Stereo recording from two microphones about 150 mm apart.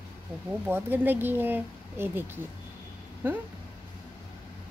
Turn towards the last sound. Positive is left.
turn(degrees=-15)  # may be behind; listen again after turning